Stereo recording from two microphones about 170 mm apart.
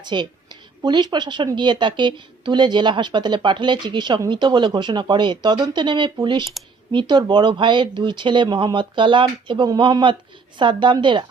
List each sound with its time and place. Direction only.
0.0 s a woman's voice: 25° right (ahead or behind)
6.6 s speech: centre (ahead or behind)
6.9 s a woman's voice: 25° right (ahead or behind)